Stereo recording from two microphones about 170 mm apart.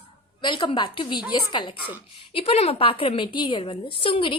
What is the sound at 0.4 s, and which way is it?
A woman's voice, 30° left (ahead or behind).